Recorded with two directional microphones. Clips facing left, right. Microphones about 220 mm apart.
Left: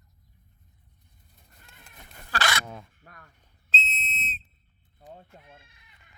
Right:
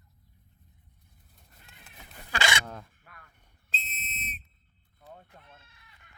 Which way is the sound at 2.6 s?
5° left (ahead or behind).